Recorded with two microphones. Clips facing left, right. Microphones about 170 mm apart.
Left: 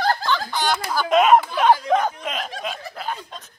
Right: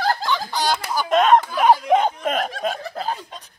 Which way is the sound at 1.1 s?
5° left (ahead or behind).